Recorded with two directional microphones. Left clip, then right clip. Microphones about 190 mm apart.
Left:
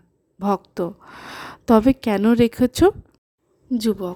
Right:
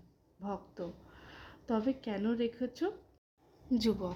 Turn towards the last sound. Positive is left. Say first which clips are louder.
# left 10 dB
turn(degrees=35)  # may be behind; listen again after turning